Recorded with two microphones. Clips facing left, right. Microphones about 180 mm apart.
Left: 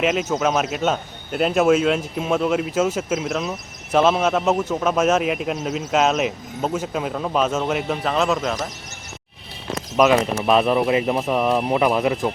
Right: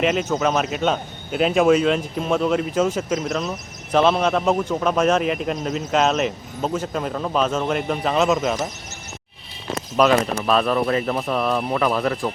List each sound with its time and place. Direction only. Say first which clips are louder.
0.0 s a man's voice: even; 5° left (ahead or behind)
10.0 s speech: left 1 dB; 10° left (ahead or behind)